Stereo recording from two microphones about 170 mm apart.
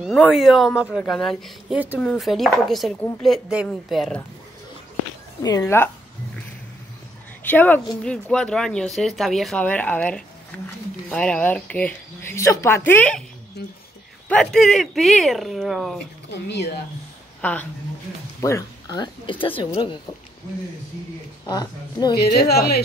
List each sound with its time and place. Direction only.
0.0 s speech: 5° right (ahead or behind)
5.6 s speech: 15° left (ahead or behind)
7.4 s a woman's voice: 10° left (ahead or behind)
14.3 s speech: 5° left (ahead or behind)
16.3 s a woman's voice: 90° left
17.4 s speech: 10° left (ahead or behind); by 20.0 s 25° left (ahead or behind)
21.5 s speech: 25° left (ahead or behind)
22.1 s a woman's voice: 70° left (ahead or behind)